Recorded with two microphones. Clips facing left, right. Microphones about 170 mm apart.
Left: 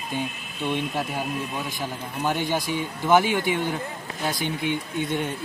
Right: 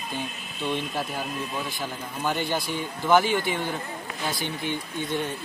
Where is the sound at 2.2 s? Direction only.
15° left (ahead or behind).